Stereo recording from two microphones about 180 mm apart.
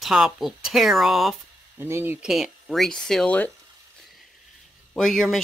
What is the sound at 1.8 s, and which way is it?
Speech, 15° right (ahead or behind).